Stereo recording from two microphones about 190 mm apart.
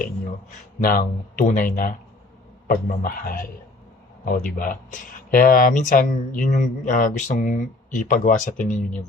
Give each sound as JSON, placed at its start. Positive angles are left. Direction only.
{"t": 0.8, "sound": "speech", "side_deg": 50}